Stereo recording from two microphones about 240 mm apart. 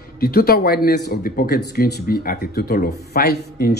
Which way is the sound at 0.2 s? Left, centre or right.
Left.